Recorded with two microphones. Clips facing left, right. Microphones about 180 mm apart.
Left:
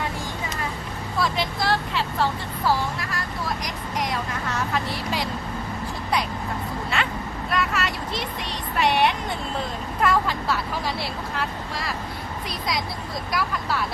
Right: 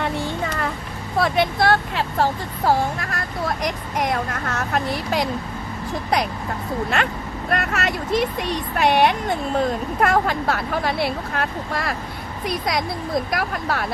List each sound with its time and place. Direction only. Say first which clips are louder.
0.4 s a sound: right 5 dB; 60° right (ahead or behind)
1.2 s speech: right 6 dB; 60° right (ahead or behind)
7.5 s speech: right 3 dB; 50° right (ahead or behind)